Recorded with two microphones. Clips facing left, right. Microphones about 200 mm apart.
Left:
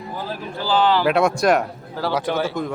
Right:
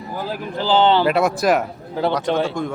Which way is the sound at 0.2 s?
20° right (ahead or behind).